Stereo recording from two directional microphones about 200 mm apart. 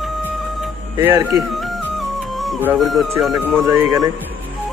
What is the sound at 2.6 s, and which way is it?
Speech, 5° right (ahead or behind).